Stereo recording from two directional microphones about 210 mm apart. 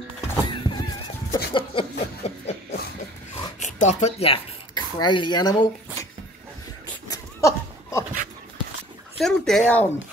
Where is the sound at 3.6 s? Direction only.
35° left (ahead or behind).